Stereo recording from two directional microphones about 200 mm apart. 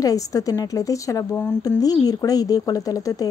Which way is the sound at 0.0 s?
15° left (ahead or behind).